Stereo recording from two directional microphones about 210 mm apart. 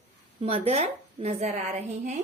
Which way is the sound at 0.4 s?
30° right (ahead or behind).